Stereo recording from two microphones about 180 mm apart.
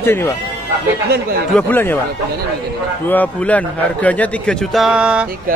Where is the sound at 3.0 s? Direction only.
10° left (ahead or behind).